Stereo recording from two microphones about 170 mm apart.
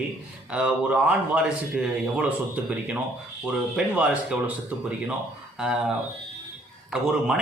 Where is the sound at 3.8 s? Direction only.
5° right (ahead or behind).